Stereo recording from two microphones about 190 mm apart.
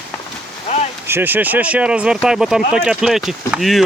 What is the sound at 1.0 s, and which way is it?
Speech, 10° right (ahead or behind).